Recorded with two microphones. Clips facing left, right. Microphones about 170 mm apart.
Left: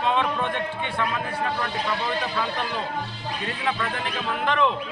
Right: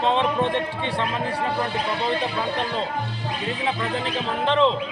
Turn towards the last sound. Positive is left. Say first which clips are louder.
# right 3 dB
turn(degrees=-30)  # may be behind; listen again after turning